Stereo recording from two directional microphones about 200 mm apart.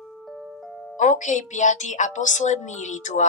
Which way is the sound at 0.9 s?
40° left (ahead or behind).